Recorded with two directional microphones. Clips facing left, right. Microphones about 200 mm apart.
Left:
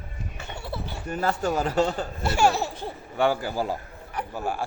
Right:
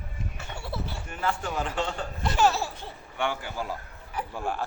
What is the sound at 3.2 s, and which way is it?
Speech, 35° left (ahead or behind).